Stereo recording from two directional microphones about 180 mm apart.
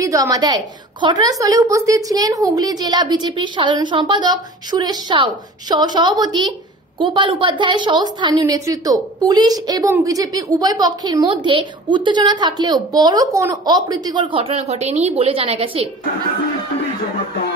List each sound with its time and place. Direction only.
0.0 s a woman's voice: 20° right (ahead or behind)